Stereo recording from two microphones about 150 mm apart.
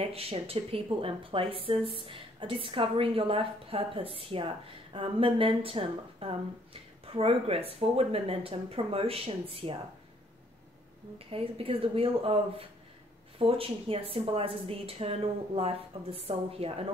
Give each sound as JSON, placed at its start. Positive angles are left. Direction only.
{"t": 0.0, "sound": "a woman's voice", "side_deg": -40}
{"t": 11.1, "sound": "a woman's voice", "side_deg": -40}